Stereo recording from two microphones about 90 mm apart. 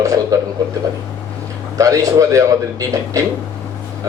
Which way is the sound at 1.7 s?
40° right (ahead or behind).